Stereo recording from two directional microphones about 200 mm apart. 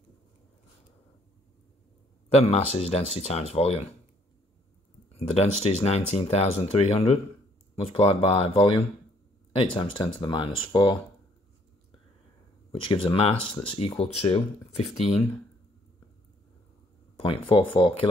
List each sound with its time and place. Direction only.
2.2 s speech: 30° left (ahead or behind)
5.1 s speech: 30° left (ahead or behind)
12.7 s speech: 25° left (ahead or behind)
17.2 s speech: 25° left (ahead or behind)